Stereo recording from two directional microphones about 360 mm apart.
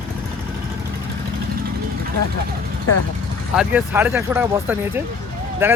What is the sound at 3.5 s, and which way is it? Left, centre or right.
Speech, centre.